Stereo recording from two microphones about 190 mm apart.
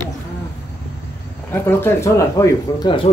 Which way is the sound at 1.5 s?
10° left (ahead or behind).